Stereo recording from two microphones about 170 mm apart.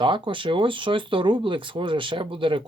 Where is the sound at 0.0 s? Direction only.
30° right (ahead or behind).